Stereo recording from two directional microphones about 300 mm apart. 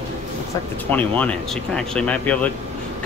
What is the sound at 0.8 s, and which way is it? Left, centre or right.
Speech, centre.